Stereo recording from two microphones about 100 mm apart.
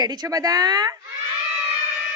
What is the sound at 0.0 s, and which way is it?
Speech, 40° right (ahead or behind).